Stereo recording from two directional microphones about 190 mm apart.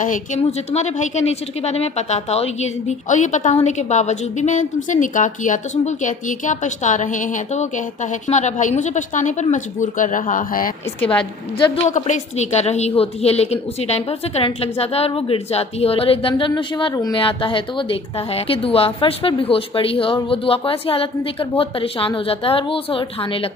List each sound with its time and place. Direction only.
0.0 s a woman's voice: 40° left (ahead or behind)
11.7 s a woman's voice: 40° left (ahead or behind)